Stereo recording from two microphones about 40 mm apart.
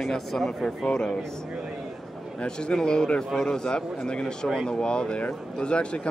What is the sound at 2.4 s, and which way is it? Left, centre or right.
Speech, left.